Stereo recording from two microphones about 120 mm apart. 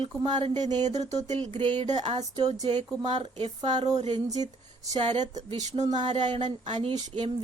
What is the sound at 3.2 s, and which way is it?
Speech, 40° right (ahead or behind).